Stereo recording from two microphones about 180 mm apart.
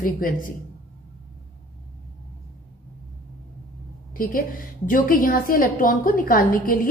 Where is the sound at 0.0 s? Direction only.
50° left (ahead or behind).